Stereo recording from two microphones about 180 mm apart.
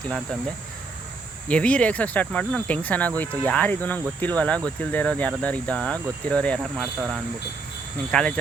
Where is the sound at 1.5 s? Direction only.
5° left (ahead or behind).